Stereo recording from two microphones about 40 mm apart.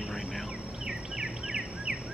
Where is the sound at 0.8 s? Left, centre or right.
Centre.